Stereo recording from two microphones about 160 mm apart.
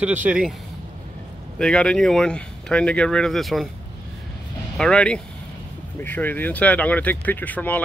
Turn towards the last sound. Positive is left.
turn(degrees=10)  # may be behind; listen again after turning